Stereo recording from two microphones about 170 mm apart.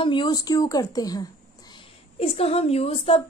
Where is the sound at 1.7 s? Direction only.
35° left (ahead or behind).